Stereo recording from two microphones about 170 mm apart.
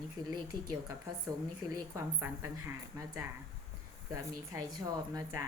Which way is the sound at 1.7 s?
20° right (ahead or behind).